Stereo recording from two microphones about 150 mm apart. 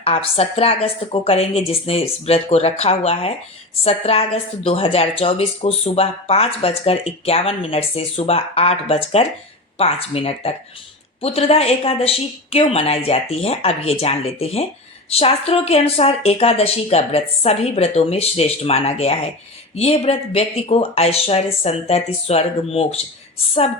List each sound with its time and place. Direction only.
0.0 s a woman's voice: 40° left (ahead or behind)